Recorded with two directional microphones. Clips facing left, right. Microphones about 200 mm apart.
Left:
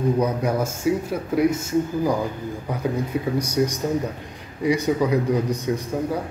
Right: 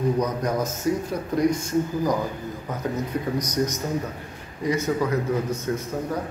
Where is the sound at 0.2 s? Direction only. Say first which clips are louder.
Left 2 dB; 10° left (ahead or behind).